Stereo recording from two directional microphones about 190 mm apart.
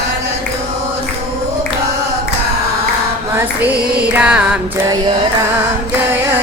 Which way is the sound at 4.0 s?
5° right (ahead or behind).